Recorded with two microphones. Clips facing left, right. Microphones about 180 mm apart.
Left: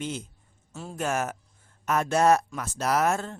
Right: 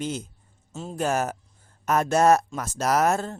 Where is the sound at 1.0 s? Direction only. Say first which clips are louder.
Right 3 dB; 35° right (ahead or behind).